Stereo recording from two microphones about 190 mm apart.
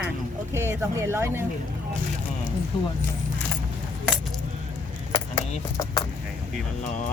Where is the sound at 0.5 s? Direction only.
15° right (ahead or behind).